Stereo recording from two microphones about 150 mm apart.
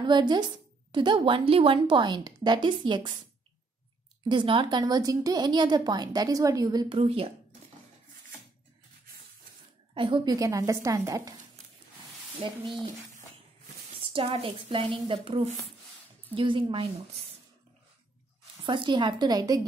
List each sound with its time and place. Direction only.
0.0 s a woman's voice: 30° right (ahead or behind)
4.2 s speech: 30° right (ahead or behind)
7.0 s a woman's voice: 40° right (ahead or behind)
9.9 s speech: 35° right (ahead or behind)
12.4 s a woman's voice: 35° right (ahead or behind)
13.9 s a woman's voice: 35° right (ahead or behind)
18.6 s a woman's voice: 35° right (ahead or behind)